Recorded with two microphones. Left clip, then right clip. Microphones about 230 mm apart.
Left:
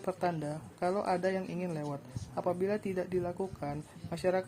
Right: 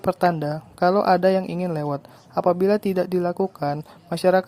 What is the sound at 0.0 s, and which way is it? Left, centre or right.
A woman's voice, right.